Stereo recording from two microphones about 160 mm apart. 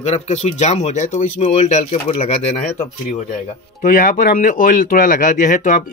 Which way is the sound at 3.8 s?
60° left (ahead or behind).